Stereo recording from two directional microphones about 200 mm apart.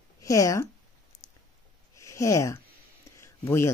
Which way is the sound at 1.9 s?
15° left (ahead or behind).